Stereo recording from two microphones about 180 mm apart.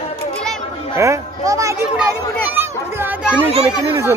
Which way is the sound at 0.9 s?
15° right (ahead or behind).